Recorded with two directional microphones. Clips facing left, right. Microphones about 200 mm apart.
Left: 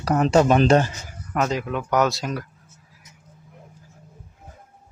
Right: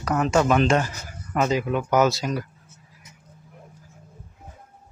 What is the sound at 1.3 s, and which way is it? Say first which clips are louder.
Speech: right 1 dB; 5° right (ahead or behind).